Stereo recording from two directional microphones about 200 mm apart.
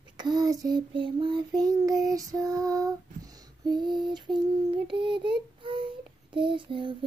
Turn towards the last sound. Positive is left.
turn(degrees=-25)  # may be behind; listen again after turning